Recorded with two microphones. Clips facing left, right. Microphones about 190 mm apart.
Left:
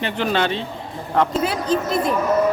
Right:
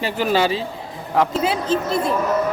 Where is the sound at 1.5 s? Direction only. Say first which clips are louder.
Even; 25° right (ahead or behind).